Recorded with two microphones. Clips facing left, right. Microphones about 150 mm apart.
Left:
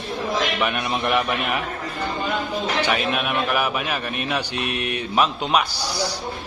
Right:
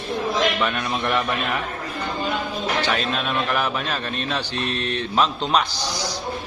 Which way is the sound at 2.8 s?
15° left (ahead or behind).